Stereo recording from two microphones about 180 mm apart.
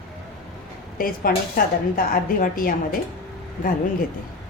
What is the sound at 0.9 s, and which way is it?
A woman's voice, 55° left (ahead or behind).